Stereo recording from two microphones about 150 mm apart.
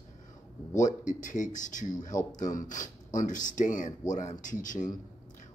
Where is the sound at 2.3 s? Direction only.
25° left (ahead or behind).